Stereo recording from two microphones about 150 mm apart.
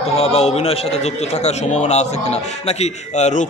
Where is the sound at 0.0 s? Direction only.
45° left (ahead or behind).